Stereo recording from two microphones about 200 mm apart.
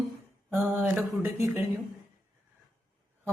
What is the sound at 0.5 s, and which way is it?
Speech, 10° right (ahead or behind).